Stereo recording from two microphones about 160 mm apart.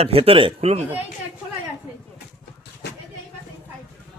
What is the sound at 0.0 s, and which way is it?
Speech, 35° right (ahead or behind).